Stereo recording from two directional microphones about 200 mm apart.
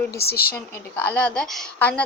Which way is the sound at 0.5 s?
10° left (ahead or behind).